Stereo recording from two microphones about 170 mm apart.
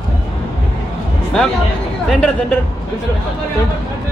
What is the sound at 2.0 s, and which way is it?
Speech, 5° left (ahead or behind).